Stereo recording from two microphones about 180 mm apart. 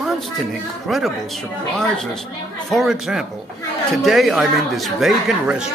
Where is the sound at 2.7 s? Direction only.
Centre (ahead or behind).